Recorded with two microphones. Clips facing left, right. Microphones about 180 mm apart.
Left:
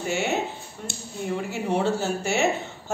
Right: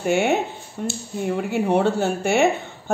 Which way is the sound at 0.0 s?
55° right (ahead or behind).